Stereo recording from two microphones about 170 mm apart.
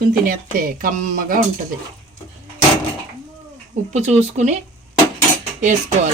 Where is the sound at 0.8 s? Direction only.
55° right (ahead or behind).